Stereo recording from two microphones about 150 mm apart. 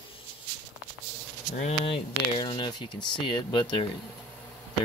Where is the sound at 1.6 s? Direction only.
45° left (ahead or behind).